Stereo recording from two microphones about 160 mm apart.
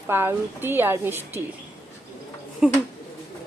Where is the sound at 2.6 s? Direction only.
5° right (ahead or behind).